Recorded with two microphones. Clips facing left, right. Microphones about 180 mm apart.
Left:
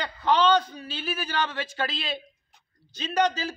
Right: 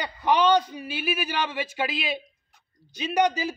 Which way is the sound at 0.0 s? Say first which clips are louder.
Right 1 dB; 15° right (ahead or behind).